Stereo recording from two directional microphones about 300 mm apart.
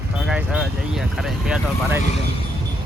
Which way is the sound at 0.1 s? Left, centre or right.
Centre.